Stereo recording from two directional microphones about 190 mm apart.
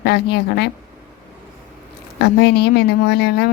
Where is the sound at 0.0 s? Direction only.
60° left (ahead or behind).